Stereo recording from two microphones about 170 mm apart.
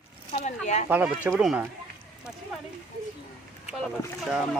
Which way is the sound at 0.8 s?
10° right (ahead or behind).